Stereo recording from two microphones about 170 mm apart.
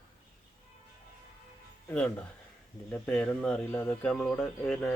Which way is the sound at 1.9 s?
10° left (ahead or behind).